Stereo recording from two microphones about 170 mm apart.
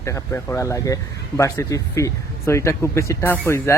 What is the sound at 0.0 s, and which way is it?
Speech, 15° left (ahead or behind).